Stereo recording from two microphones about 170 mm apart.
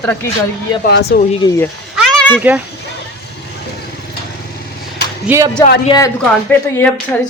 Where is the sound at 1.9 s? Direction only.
5° left (ahead or behind).